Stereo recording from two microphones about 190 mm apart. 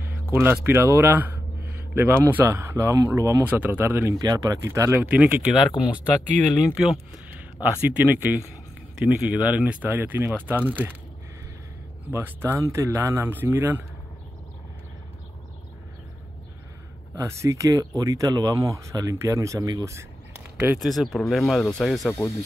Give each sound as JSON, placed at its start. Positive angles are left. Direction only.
{"t": 0.3, "sound": "speech", "side_deg": -10}
{"t": 6.4, "sound": "speech", "side_deg": 10}
{"t": 6.8, "sound": "speech", "side_deg": -5}
{"t": 12.1, "sound": "speech", "side_deg": -10}
{"t": 17.1, "sound": "speech", "side_deg": -15}